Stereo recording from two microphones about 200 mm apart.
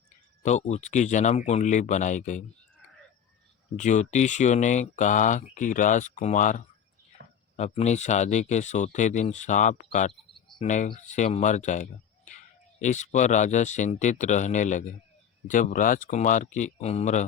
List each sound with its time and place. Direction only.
0.4 s speech: 35° left (ahead or behind)
3.8 s speech: 35° left (ahead or behind)